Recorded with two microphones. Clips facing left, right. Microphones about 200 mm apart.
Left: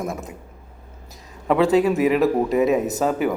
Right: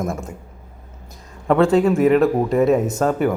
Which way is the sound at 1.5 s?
5° left (ahead or behind).